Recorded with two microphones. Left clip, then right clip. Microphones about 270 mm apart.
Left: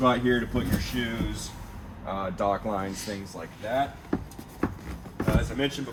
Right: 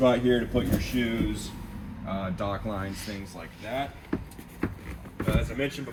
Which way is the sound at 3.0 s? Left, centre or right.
Centre.